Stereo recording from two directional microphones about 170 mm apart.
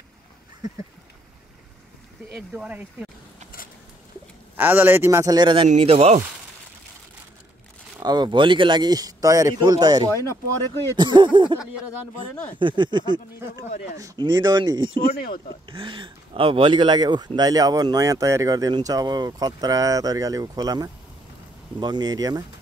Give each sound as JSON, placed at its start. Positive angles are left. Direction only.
{"t": 2.3, "sound": "a man's voice", "side_deg": -5}
{"t": 4.6, "sound": "a man's voice", "side_deg": -10}
{"t": 5.7, "sound": "speech", "side_deg": -40}
{"t": 8.0, "sound": "speech", "side_deg": -25}
{"t": 12.5, "sound": "speech", "side_deg": -30}
{"t": 13.7, "sound": "speech", "side_deg": 50}
{"t": 13.9, "sound": "speech", "side_deg": -25}
{"t": 15.1, "sound": "speech", "side_deg": 60}
{"t": 15.6, "sound": "speech", "side_deg": -30}